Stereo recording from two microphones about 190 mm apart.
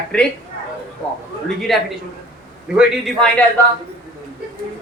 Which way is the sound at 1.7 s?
Centre (ahead or behind).